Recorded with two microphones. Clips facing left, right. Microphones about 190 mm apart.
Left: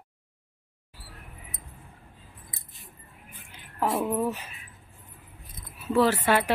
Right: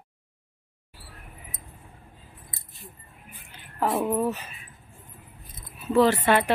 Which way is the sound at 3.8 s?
25° right (ahead or behind).